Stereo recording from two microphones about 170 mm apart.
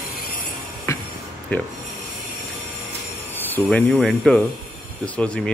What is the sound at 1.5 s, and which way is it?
Speech, 10° left (ahead or behind).